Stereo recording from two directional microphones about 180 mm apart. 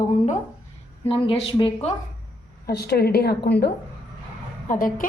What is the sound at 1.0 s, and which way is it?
Speech, 30° left (ahead or behind).